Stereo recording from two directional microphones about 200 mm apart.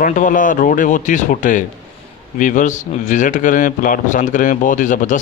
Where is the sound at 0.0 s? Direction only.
40° left (ahead or behind).